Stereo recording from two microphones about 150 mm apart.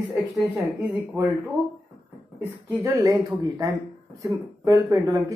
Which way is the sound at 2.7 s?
25° right (ahead or behind).